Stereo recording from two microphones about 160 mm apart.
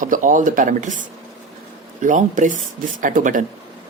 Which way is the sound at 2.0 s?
50° right (ahead or behind).